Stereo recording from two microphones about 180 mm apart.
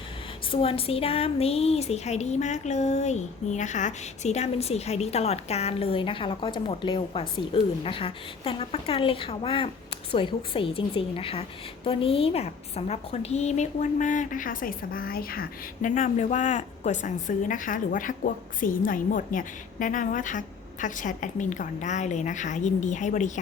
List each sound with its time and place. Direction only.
0.5 s a woman's voice: 30° left (ahead or behind)